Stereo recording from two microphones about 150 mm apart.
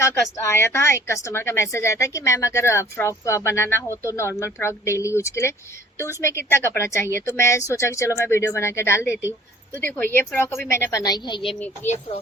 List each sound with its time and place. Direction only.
0.0 s a woman's voice: 20° left (ahead or behind)
11.9 s speech: 45° left (ahead or behind)